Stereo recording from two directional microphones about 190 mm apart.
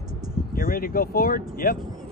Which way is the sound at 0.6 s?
50° left (ahead or behind).